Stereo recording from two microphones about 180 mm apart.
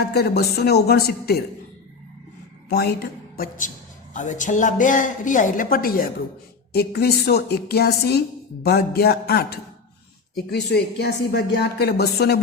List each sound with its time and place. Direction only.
0.0 s speech: 60° left (ahead or behind)
2.6 s a woman's voice: 60° left (ahead or behind)
4.1 s a woman's voice: 45° left (ahead or behind); by 12.4 s 65° left (ahead or behind)